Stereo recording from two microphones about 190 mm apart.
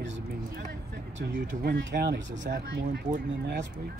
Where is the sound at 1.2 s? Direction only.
60° right (ahead or behind).